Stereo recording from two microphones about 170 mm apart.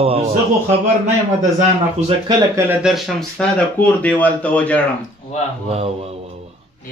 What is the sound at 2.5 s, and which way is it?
Speech, 10° right (ahead or behind).